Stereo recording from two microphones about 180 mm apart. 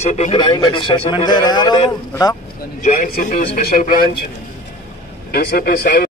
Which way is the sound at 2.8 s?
50° left (ahead or behind).